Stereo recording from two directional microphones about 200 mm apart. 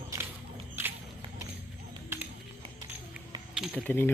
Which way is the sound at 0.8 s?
10° right (ahead or behind).